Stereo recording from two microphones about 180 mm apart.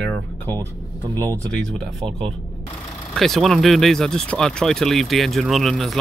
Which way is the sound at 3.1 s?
Centre (ahead or behind).